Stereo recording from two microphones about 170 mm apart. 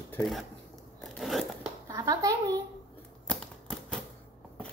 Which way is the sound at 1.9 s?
20° right (ahead or behind).